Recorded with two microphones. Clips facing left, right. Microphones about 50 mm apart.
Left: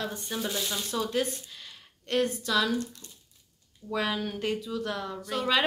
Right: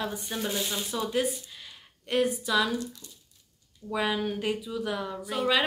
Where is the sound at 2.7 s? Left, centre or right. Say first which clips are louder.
Left 1 dB; left.